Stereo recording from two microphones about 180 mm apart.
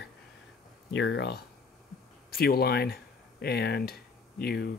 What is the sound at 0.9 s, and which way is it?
Speech, 85° left.